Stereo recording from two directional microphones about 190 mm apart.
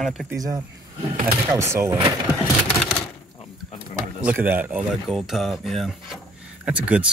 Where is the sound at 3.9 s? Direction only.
Centre (ahead or behind).